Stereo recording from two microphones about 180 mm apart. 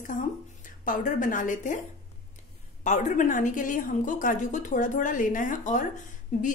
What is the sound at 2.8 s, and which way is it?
A woman's voice, 40° left (ahead or behind).